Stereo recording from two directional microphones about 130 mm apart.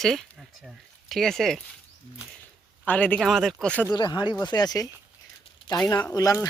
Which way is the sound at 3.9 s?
35° left (ahead or behind).